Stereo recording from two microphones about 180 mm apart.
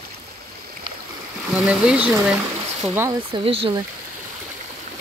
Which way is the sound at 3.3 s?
30° right (ahead or behind).